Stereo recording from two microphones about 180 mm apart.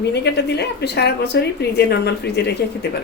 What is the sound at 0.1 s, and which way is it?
Speech, 65° left (ahead or behind).